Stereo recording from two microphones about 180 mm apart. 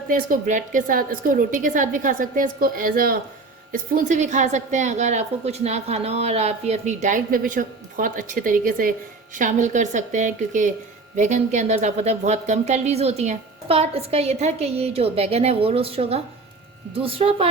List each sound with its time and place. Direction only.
0.1 s a woman's voice: 50° right (ahead or behind); by 17.5 s 30° right (ahead or behind)